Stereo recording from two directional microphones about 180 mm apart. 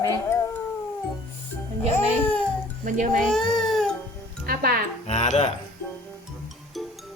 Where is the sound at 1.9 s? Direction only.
10° left (ahead or behind).